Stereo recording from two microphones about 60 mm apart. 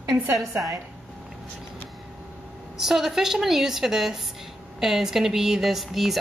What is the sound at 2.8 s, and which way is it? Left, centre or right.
A woman's voice, centre.